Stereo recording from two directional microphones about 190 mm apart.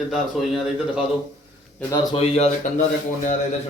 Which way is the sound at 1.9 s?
20° left (ahead or behind).